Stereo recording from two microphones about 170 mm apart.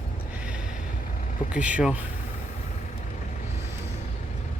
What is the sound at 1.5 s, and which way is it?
Speech, 10° right (ahead or behind).